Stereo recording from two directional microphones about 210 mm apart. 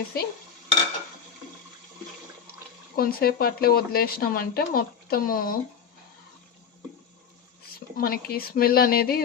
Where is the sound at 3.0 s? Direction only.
45° left (ahead or behind).